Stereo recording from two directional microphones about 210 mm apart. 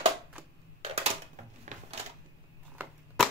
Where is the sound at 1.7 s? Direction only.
35° right (ahead or behind).